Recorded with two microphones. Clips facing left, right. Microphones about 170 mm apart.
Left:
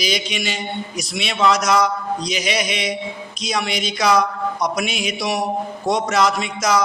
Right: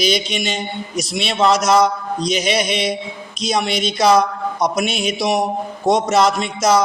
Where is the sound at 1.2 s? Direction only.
25° right (ahead or behind).